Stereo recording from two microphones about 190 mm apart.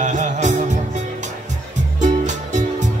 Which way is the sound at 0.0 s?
40° right (ahead or behind).